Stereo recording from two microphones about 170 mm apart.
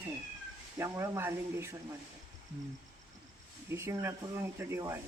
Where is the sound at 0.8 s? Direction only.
15° right (ahead or behind).